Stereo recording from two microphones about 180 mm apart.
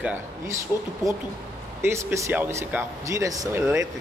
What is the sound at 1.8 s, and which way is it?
Speech, 15° right (ahead or behind).